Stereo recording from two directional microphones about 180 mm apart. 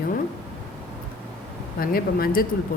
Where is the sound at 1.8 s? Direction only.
55° left (ahead or behind).